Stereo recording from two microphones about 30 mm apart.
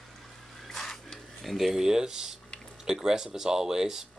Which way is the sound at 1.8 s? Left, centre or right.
Right.